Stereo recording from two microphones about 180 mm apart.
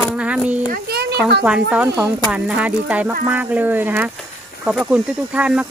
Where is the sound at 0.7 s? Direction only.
60° right (ahead or behind).